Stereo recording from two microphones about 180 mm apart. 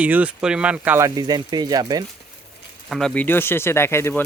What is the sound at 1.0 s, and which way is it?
Speech, 20° right (ahead or behind).